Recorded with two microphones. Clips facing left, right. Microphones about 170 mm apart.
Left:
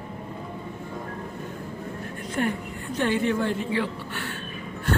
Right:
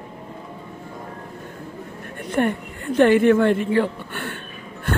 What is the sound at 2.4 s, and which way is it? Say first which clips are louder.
Speech: right 6 dB; 55° right (ahead or behind).